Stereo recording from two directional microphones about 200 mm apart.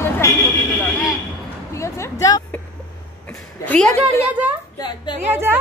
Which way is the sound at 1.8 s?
15° left (ahead or behind).